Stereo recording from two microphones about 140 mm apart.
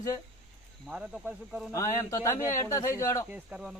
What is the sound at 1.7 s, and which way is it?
A man's voice, 20° left (ahead or behind).